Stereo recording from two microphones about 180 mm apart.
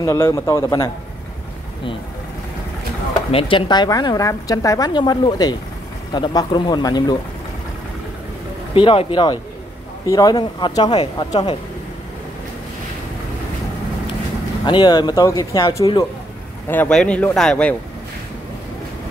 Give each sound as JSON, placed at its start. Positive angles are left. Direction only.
{"t": 0.0, "sound": "speech", "side_deg": 15}
{"t": 3.3, "sound": "speech", "side_deg": 30}
{"t": 8.7, "sound": "speech", "side_deg": 30}
{"t": 10.9, "sound": "speech", "side_deg": 35}
{"t": 14.7, "sound": "speech", "side_deg": 25}
{"t": 16.6, "sound": "speech", "side_deg": 10}